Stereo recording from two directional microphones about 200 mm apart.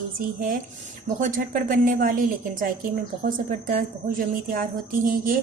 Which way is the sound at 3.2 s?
45° right (ahead or behind).